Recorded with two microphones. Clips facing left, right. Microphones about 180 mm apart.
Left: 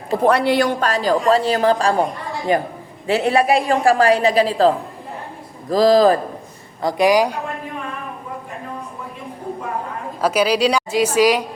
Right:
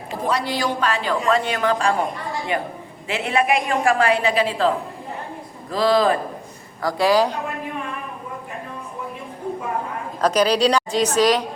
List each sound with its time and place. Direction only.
0.3 s a man's voice: 60° left (ahead or behind); by 4.7 s 35° left (ahead or behind)
5.7 s a woman's voice: 40° left (ahead or behind)
6.8 s a woman's voice: 20° left (ahead or behind)
10.2 s a woman's voice: 5° left (ahead or behind)